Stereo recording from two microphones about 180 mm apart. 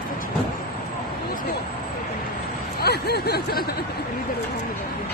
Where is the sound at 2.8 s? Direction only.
60° left (ahead or behind).